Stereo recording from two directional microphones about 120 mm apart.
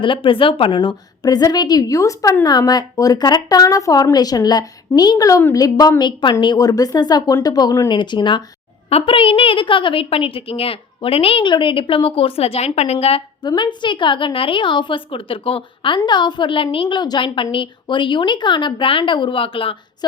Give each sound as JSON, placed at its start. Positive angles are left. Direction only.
{"t": 0.0, "sound": "a woman's voice", "side_deg": 45}
{"t": 8.9, "sound": "a woman's voice", "side_deg": 55}
{"t": 13.4, "sound": "a woman's voice", "side_deg": 40}